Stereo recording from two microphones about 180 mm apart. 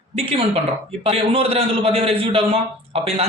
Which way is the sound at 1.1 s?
30° right (ahead or behind).